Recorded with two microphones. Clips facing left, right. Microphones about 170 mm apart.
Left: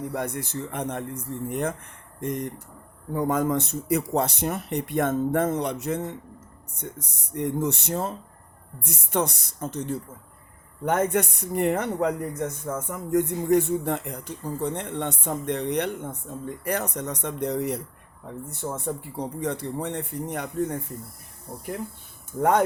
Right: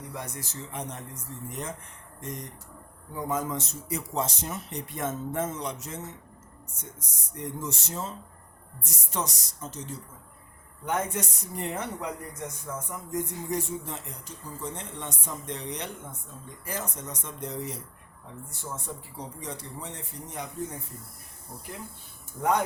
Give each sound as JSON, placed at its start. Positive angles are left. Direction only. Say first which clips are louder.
{"t": 0.1, "sound": "speech", "louder": "left 9 dB", "side_deg": 60}
{"t": 22.4, "sound": "speech", "louder": "left 5 dB", "side_deg": 55}